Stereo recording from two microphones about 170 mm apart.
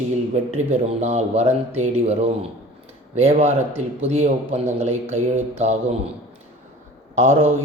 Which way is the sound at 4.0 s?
40° right (ahead or behind).